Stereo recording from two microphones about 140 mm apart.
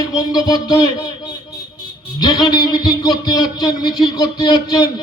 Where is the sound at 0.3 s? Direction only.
30° left (ahead or behind).